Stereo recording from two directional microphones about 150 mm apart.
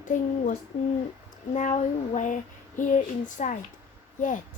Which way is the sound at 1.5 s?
50° left (ahead or behind).